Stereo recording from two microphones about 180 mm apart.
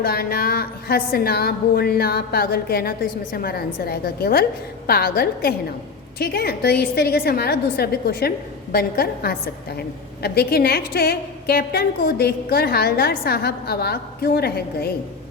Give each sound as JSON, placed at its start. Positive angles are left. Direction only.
{"t": 0.0, "sound": "a woman's voice", "side_deg": 60}